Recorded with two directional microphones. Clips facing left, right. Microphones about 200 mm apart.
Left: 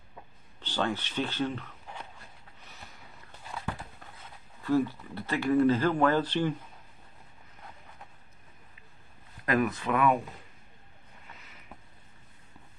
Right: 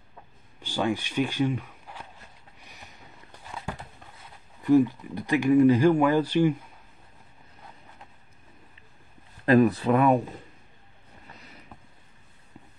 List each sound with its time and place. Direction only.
0.6 s speech: 10° right (ahead or behind)
4.2 s speech: 15° right (ahead or behind)
9.5 s speech: 35° right (ahead or behind)
11.2 s vehicle: 35° right (ahead or behind)